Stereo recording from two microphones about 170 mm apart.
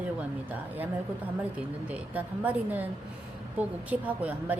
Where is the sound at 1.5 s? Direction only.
10° right (ahead or behind).